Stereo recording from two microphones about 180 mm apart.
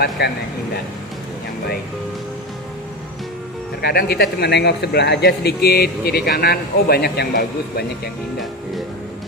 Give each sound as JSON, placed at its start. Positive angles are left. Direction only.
{"t": 0.2, "sound": "speech", "side_deg": 65}
{"t": 3.8, "sound": "speech", "side_deg": 60}